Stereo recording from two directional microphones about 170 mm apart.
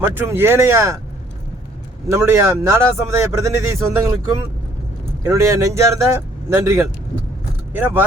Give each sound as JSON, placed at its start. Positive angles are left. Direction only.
{"t": 0.1, "sound": "speech", "side_deg": -10}
{"t": 2.0, "sound": "speech", "side_deg": -15}
{"t": 5.2, "sound": "speech", "side_deg": -15}